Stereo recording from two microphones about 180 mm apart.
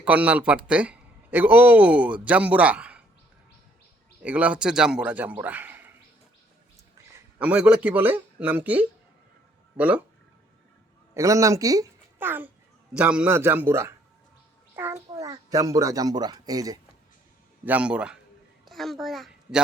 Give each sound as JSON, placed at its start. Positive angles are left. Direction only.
{"t": 0.0, "sound": "speech", "side_deg": -10}
{"t": 4.2, "sound": "speech", "side_deg": -5}
{"t": 7.3, "sound": "speech", "side_deg": -10}
{"t": 11.1, "sound": "a child's voice", "side_deg": -20}
{"t": 17.7, "sound": "a man's voice", "side_deg": -5}